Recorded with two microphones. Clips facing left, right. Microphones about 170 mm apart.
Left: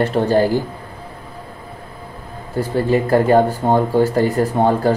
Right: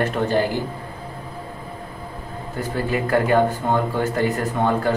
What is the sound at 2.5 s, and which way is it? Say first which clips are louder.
Speech: left 7 dB; 30° left (ahead or behind).